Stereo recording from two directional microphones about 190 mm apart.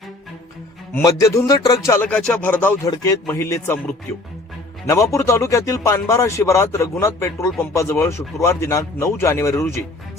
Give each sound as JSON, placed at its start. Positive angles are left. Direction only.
{"t": 0.9, "sound": "speech", "side_deg": 15}
{"t": 4.9, "sound": "speech", "side_deg": 15}